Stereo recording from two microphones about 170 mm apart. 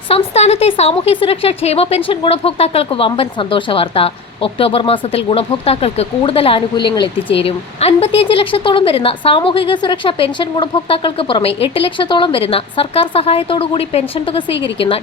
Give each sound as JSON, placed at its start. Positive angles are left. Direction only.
{"t": 0.1, "sound": "a woman's voice", "side_deg": 40}